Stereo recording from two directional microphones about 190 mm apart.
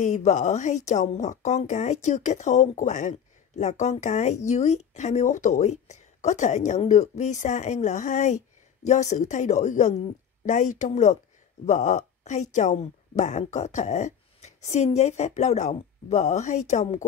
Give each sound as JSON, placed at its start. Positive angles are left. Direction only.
{"t": 0.0, "sound": "a woman's voice", "side_deg": 40}